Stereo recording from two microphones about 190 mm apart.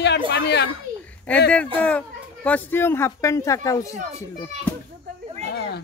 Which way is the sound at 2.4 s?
10° left (ahead or behind).